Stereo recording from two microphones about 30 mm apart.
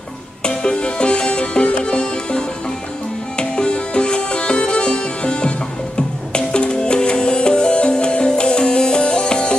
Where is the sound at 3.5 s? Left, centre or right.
Left.